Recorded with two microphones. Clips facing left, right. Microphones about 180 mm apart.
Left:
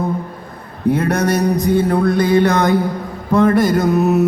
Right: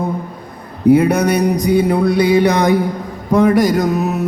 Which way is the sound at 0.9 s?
10° right (ahead or behind).